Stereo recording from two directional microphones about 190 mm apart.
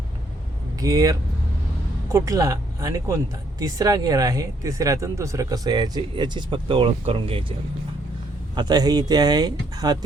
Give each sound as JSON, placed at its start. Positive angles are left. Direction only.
{"t": 0.8, "sound": "speech", "side_deg": -20}
{"t": 2.1, "sound": "speech", "side_deg": -15}
{"t": 8.5, "sound": "speech", "side_deg": -20}